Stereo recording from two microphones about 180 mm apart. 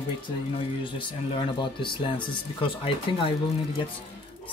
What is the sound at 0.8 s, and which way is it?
Speech, 25° left (ahead or behind).